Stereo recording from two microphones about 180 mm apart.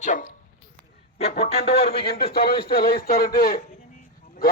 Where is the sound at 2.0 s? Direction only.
60° left (ahead or behind).